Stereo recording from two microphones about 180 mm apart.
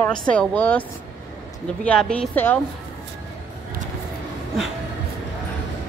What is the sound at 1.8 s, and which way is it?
Speech, 5° left (ahead or behind).